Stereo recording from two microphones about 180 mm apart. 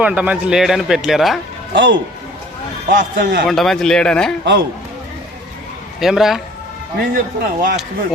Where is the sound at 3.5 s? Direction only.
Centre (ahead or behind).